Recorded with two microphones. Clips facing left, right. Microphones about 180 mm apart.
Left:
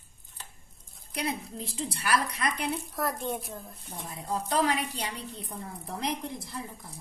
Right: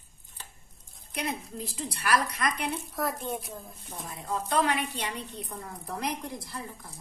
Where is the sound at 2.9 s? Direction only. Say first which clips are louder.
Even; centre (ahead or behind).